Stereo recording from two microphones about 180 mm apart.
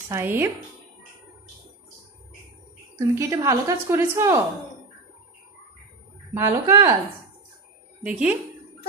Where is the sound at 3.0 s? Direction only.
15° right (ahead or behind).